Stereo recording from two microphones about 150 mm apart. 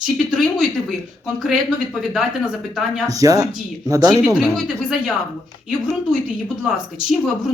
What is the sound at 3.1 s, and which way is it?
A man's voice, 25° right (ahead or behind).